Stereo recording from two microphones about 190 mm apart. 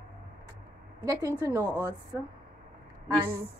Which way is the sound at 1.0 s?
20° right (ahead or behind).